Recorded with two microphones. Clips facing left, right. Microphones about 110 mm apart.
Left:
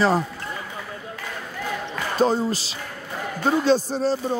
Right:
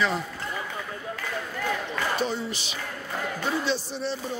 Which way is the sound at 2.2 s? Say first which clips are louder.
Left 8 dB; 40° left (ahead or behind).